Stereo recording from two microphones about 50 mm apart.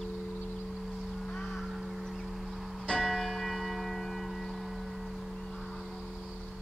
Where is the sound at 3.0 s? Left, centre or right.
Centre.